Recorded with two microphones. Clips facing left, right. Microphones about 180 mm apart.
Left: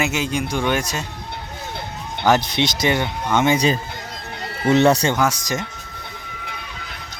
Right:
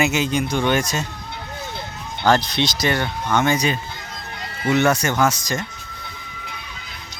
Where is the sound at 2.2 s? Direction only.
15° left (ahead or behind).